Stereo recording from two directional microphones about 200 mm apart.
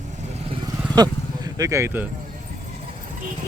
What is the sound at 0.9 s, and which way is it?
Speech, 20° right (ahead or behind).